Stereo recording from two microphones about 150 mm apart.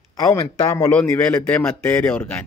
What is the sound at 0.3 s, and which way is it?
A man's voice, 20° left (ahead or behind).